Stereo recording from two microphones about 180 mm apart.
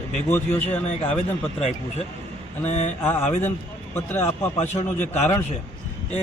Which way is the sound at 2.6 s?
40° left (ahead or behind).